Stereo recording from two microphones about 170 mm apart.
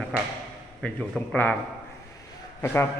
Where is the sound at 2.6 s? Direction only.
15° left (ahead or behind).